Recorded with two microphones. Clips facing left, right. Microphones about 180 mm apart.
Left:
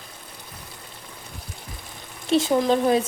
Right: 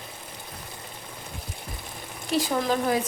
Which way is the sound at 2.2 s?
25° left (ahead or behind).